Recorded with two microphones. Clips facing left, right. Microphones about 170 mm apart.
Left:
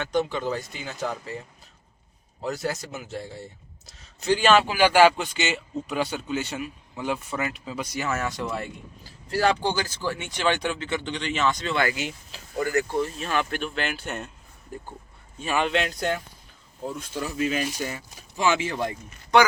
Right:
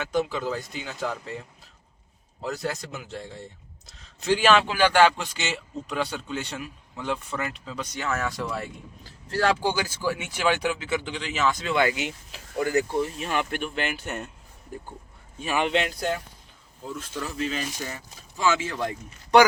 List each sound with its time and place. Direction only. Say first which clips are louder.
0.0 s a man's voice: left 1 dB; centre (ahead or behind)
11.8 s speech: right 2 dB; 20° right (ahead or behind)
15.4 s speech: even; 15° right (ahead or behind)
17.3 s speech: left 5 dB; 10° left (ahead or behind)